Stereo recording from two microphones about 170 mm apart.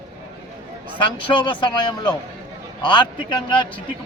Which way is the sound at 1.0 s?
30° left (ahead or behind).